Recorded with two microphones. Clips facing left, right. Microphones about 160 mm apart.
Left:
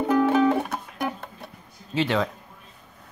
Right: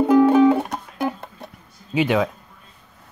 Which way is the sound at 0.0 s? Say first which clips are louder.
Right 6 dB; 10° right (ahead or behind).